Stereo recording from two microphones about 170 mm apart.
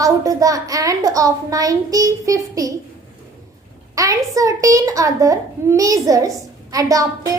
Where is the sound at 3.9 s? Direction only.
20° right (ahead or behind).